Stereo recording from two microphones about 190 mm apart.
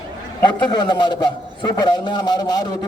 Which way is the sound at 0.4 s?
25° left (ahead or behind).